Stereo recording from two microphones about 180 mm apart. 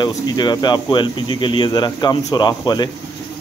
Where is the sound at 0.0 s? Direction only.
25° left (ahead or behind).